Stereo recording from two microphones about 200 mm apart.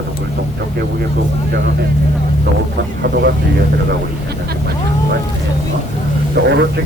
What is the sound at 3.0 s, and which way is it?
Speech, 55° right (ahead or behind).